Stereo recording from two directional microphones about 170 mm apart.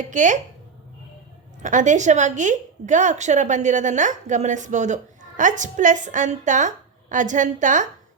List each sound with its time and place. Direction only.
0.0 s a woman's voice: 45° right (ahead or behind)
1.6 s a woman's voice: 45° right (ahead or behind)